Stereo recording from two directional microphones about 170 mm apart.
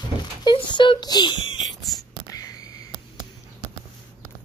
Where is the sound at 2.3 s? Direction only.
20° left (ahead or behind).